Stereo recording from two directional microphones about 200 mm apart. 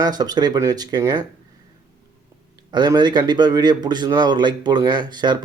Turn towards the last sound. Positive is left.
turn(degrees=-20)  # may be behind; listen again after turning